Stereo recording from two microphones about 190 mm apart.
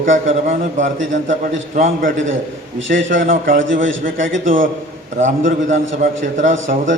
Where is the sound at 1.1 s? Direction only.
80° right.